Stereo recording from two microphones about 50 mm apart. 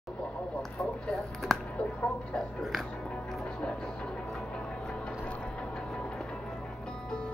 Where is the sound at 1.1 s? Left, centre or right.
Centre.